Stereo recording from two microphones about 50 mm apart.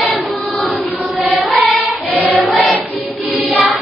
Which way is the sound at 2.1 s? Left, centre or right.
Right.